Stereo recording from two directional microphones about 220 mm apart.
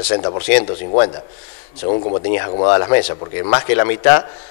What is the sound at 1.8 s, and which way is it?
Speech, 35° left (ahead or behind).